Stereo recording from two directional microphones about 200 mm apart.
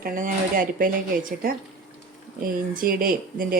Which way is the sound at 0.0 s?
45° right (ahead or behind).